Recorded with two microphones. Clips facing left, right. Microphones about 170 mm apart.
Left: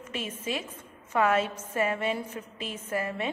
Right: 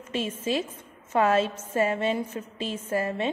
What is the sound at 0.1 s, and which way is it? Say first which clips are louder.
A woman's voice: right 6 dB; 30° right (ahead or behind).